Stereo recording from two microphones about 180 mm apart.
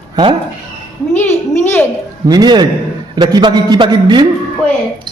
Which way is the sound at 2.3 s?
25° right (ahead or behind).